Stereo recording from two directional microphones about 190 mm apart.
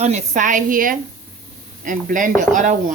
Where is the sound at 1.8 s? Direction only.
45° right (ahead or behind).